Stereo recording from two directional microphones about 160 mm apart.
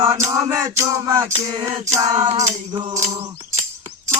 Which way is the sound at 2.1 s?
50° right (ahead or behind).